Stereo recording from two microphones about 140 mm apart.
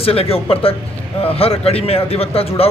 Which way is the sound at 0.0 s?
45° left (ahead or behind).